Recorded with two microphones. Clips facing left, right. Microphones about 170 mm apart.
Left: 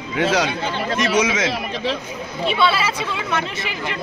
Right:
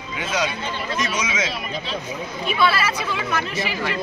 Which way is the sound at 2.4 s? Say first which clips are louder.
Left 2 dB; 25° left (ahead or behind).